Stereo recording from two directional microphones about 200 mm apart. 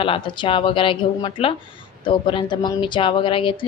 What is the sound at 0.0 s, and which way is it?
A woman's voice, 25° left (ahead or behind).